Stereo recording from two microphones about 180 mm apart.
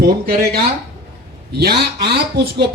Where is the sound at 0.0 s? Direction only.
60° right (ahead or behind).